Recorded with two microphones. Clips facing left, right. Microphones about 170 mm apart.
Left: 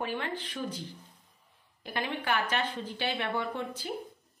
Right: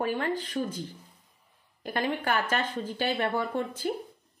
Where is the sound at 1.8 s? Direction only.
45° right (ahead or behind).